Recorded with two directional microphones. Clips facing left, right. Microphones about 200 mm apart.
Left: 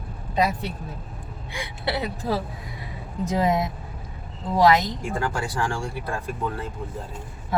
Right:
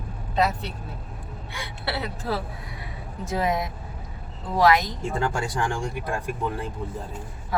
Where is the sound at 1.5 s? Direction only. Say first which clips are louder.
Left 3 dB; 20° left (ahead or behind).